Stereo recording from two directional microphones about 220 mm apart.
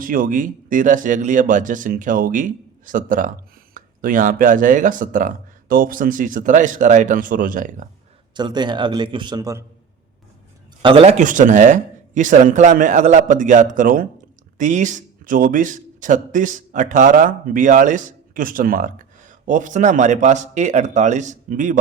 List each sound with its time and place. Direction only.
0.0 s a man's voice: 40° right (ahead or behind)
8.4 s a man's voice: 20° right (ahead or behind)
10.8 s a man's voice: 25° right (ahead or behind)